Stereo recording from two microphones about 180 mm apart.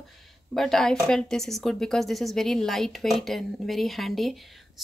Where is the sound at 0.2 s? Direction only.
Centre (ahead or behind).